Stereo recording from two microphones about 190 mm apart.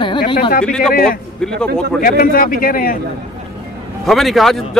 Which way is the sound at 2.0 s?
50° left (ahead or behind).